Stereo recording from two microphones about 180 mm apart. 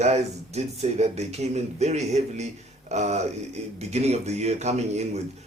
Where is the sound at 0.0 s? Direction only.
35° right (ahead or behind).